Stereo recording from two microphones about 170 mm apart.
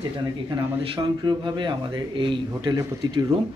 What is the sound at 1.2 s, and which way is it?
A man's voice, 25° right (ahead or behind).